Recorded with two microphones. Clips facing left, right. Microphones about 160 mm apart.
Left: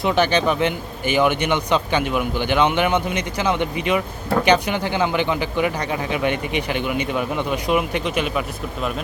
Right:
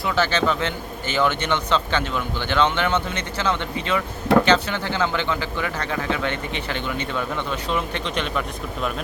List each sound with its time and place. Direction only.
0.0 s a man's voice: 20° left (ahead or behind)